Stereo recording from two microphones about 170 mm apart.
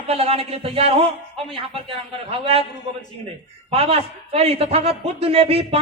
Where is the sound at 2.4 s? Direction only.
35° right (ahead or behind).